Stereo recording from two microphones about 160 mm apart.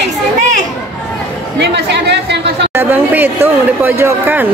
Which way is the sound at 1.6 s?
90° right.